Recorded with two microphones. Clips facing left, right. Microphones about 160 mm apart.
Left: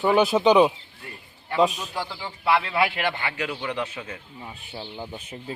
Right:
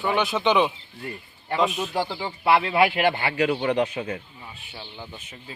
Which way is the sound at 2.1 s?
25° right (ahead or behind).